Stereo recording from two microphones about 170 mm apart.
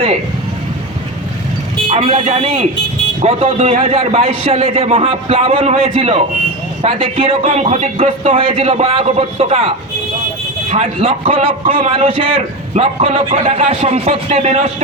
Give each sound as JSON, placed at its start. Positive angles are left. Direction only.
{"t": 1.9, "sound": "a man's voice", "side_deg": -30}